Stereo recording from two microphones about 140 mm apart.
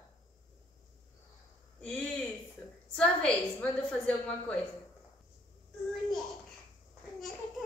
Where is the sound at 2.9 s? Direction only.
5° left (ahead or behind).